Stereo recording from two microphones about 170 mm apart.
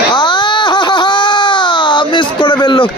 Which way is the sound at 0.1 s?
25° left (ahead or behind).